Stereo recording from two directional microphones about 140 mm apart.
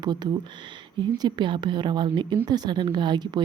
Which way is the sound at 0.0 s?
30° right (ahead or behind).